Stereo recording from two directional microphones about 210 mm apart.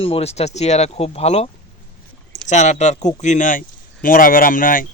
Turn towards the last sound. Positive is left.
turn(degrees=40)  # may be behind; listen again after turning